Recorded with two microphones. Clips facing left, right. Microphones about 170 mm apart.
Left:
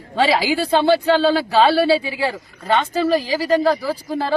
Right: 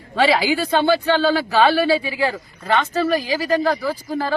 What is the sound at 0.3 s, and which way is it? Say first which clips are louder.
Speech: left 1 dB; 30° left (ahead or behind).